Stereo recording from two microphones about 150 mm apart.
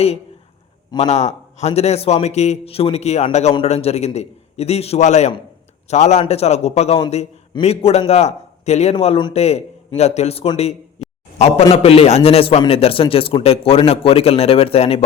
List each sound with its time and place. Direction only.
0.9 s a man's voice: 45° left (ahead or behind)
11.0 s a sound: 45° left (ahead or behind)
11.3 s a man's voice: 40° left (ahead or behind)